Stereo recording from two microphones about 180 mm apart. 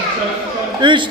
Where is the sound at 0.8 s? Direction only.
25° right (ahead or behind).